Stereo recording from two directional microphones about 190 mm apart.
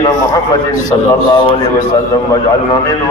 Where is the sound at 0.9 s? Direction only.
20° left (ahead or behind).